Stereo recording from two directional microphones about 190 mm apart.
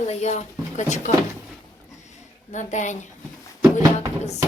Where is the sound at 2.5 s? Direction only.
40° left (ahead or behind).